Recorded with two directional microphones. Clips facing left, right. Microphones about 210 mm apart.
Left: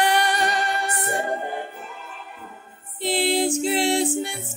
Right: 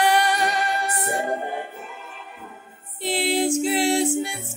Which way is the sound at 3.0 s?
5° right (ahead or behind).